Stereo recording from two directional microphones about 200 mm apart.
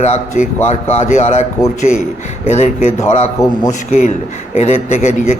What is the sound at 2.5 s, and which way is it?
A man's voice, 35° left (ahead or behind).